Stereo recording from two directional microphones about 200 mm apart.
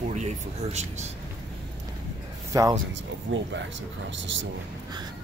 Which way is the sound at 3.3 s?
65° right (ahead or behind).